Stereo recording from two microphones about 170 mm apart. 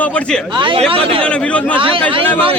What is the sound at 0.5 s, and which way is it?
Speech, 30° right (ahead or behind).